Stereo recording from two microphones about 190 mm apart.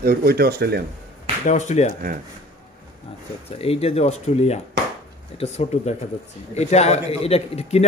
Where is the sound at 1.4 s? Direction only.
40° left (ahead or behind).